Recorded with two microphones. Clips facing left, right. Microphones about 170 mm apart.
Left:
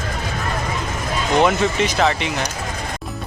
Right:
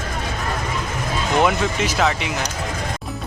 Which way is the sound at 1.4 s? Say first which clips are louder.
Left 3 dB; 5° right (ahead or behind).